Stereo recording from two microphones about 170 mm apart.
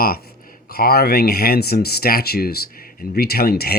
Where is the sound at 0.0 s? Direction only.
60° left (ahead or behind).